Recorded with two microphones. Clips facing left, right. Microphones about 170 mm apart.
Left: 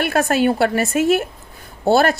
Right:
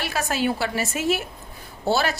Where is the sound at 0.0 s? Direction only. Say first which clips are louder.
Left 8 dB; 55° left (ahead or behind).